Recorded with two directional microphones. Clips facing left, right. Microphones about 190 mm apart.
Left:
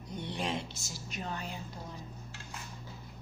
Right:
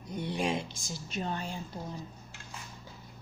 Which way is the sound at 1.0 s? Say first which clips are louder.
Right 4 dB; 30° right (ahead or behind).